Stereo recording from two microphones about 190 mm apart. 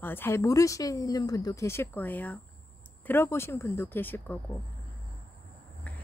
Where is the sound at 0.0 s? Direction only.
10° left (ahead or behind).